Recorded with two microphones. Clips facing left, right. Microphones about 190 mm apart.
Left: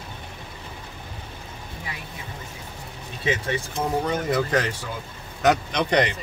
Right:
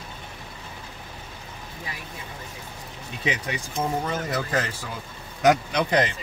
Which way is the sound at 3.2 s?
15° right (ahead or behind).